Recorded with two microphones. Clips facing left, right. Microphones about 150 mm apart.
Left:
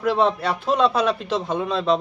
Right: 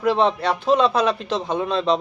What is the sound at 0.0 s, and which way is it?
A man's voice, centre (ahead or behind).